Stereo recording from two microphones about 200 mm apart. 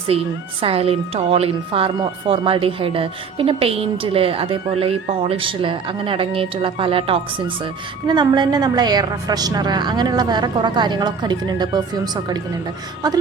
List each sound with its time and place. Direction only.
0.1 s a woman's voice: 30° right (ahead or behind)